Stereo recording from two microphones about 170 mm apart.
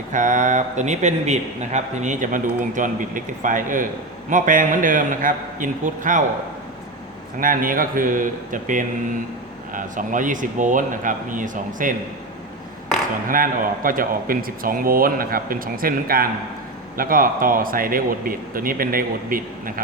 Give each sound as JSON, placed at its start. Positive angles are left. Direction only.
{"t": 0.1, "sound": "speech", "side_deg": -50}
{"t": 7.3, "sound": "speech", "side_deg": -55}
{"t": 13.2, "sound": "speech", "side_deg": -55}